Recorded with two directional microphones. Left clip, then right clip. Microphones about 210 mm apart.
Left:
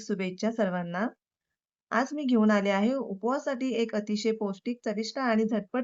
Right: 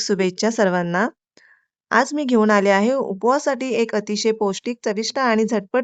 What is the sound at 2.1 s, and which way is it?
Speech, 60° right (ahead or behind).